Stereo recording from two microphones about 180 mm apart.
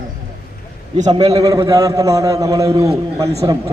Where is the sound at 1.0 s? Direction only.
25° right (ahead or behind).